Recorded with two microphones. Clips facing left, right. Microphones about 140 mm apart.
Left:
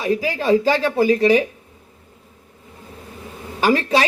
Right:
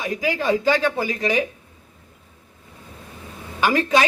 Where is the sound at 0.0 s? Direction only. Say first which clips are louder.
Left 3 dB; 35° left (ahead or behind).